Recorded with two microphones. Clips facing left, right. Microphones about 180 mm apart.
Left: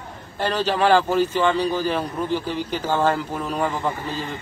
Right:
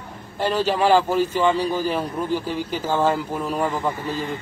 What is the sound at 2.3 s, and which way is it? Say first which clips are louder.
Speech: even; 45° right (ahead or behind).